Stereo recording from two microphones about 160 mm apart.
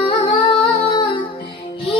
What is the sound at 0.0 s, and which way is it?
Music, 30° left (ahead or behind).